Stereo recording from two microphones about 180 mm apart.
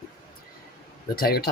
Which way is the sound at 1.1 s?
60° left (ahead or behind).